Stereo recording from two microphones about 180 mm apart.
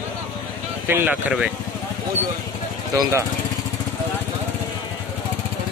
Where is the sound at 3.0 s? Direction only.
15° right (ahead or behind).